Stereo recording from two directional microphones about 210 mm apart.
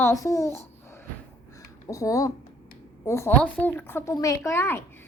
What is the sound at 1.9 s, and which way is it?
A woman's voice, 15° left (ahead or behind).